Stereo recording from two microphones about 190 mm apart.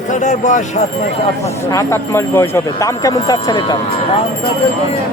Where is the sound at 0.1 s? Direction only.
40° left (ahead or behind).